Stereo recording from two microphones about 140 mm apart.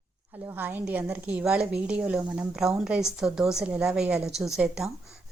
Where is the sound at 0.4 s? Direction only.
15° right (ahead or behind).